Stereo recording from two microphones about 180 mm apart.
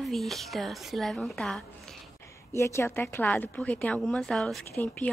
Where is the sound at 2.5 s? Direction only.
15° left (ahead or behind).